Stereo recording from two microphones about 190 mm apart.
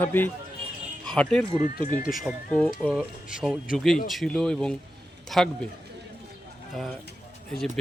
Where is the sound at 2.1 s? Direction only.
5° left (ahead or behind).